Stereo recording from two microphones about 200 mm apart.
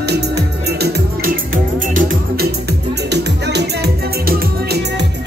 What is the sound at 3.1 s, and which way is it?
Music, 55° right (ahead or behind).